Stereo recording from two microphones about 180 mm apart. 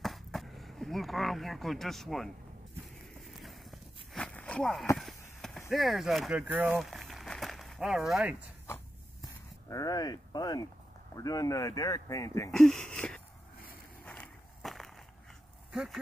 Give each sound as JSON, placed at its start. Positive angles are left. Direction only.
{"t": 0.0, "sound": "a sound", "side_deg": 0}
{"t": 3.2, "sound": "walk", "side_deg": 0}
{"t": 5.7, "sound": "speech", "side_deg": 0}
{"t": 9.7, "sound": "speech", "side_deg": 20}
{"t": 12.4, "sound": "a sound", "side_deg": 5}
{"t": 14.0, "sound": "walk", "side_deg": 5}
{"t": 15.7, "sound": "speech", "side_deg": -5}